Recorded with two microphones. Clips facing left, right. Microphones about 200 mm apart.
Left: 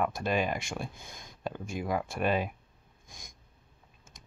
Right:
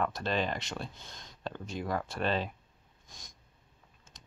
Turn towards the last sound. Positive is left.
turn(degrees=10)  # may be behind; listen again after turning